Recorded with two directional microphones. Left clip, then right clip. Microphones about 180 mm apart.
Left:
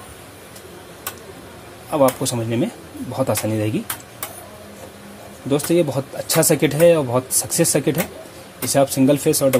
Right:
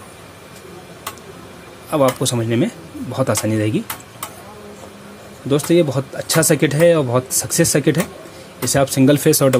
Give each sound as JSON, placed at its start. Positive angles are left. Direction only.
{"t": 1.9, "sound": "speech", "side_deg": -15}
{"t": 5.5, "sound": "speech", "side_deg": -10}